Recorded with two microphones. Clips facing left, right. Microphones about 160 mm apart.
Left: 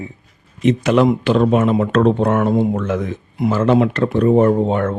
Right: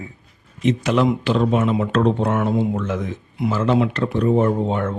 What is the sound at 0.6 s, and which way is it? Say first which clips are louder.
Speech: left 4 dB; 55° left (ahead or behind).